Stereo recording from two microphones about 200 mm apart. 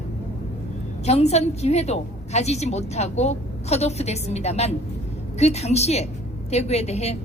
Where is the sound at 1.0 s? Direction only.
30° left (ahead or behind).